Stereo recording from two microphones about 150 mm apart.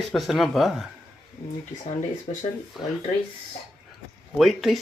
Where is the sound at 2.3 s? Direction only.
55° left (ahead or behind).